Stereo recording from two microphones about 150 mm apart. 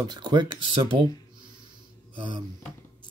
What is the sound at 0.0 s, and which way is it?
Speech, 30° right (ahead or behind).